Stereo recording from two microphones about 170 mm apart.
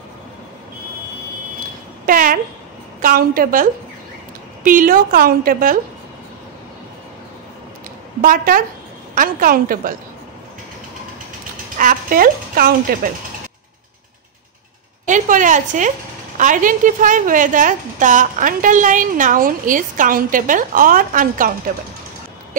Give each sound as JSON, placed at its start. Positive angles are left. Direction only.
{"t": 2.0, "sound": "a woman's voice", "side_deg": -55}
{"t": 4.6, "sound": "a woman's voice", "side_deg": -55}
{"t": 8.2, "sound": "a woman's voice", "side_deg": -55}
{"t": 11.8, "sound": "speech", "side_deg": -55}
{"t": 15.0, "sound": "a woman's voice", "side_deg": -50}